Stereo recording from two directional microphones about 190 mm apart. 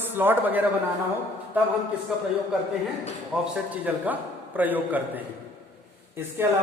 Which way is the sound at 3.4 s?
10° right (ahead or behind).